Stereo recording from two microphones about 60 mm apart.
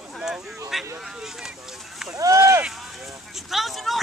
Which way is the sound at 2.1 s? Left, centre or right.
Right.